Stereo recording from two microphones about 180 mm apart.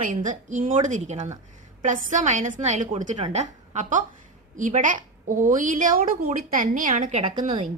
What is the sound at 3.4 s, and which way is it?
A woman's voice, 40° right (ahead or behind).